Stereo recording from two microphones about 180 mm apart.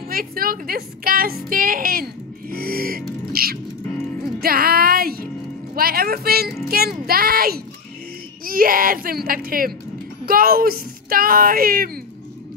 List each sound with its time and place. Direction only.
0.1 s a woman's voice: 55° right (ahead or behind)